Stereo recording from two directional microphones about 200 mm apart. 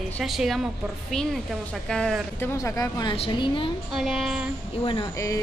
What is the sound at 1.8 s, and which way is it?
A woman's voice, 5° left (ahead or behind).